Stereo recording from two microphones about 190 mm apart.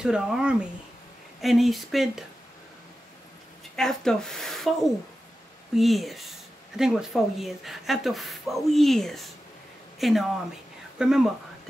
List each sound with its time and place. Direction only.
0.0 s speech: 5° right (ahead or behind)
3.7 s speech: 5° left (ahead or behind)
5.8 s speech: centre (ahead or behind)